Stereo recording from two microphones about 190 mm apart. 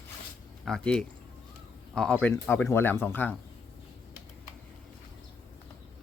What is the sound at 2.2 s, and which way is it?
Speech, 10° left (ahead or behind).